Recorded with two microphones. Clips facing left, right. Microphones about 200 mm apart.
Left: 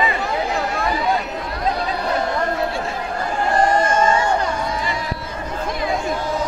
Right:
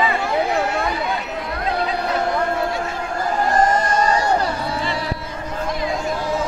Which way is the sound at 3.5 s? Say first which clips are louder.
Left 2 dB; 40° right (ahead or behind).